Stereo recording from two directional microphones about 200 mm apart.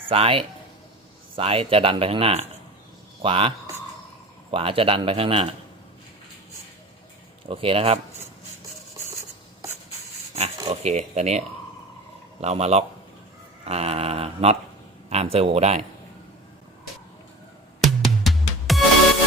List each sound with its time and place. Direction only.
0.1 s a man's voice: 30° right (ahead or behind)
4.5 s speech: 25° right (ahead or behind)
7.4 s speech: 25° right (ahead or behind)
10.7 s speech: 35° right (ahead or behind)
17.7 s music: centre (ahead or behind)